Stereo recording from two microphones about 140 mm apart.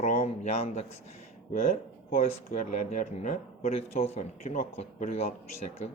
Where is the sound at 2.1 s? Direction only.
85° left; by 5.3 s 55° left (ahead or behind).